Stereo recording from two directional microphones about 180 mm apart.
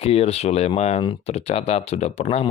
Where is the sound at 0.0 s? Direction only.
35° left (ahead or behind).